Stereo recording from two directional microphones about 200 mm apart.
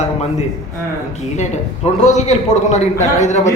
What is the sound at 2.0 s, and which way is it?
A man's voice, 35° left (ahead or behind).